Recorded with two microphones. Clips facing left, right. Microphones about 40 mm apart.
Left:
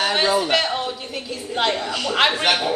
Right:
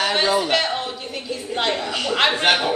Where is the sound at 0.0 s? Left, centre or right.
Centre.